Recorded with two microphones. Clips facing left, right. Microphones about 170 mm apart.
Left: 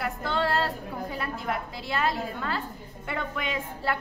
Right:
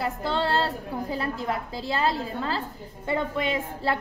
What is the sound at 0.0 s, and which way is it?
A woman's voice, 30° right (ahead or behind).